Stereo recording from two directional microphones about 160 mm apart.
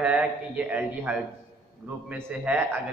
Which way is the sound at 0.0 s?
10° right (ahead or behind).